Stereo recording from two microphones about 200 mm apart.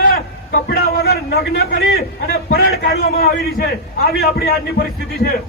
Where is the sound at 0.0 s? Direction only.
45° left (ahead or behind).